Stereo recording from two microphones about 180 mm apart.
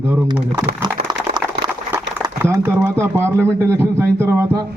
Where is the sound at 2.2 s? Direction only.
15° right (ahead or behind).